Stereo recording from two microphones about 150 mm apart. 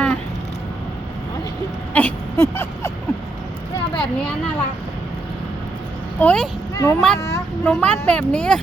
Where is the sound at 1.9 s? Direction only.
15° left (ahead or behind).